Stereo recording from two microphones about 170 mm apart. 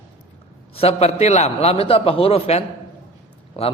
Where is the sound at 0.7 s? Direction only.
35° left (ahead or behind).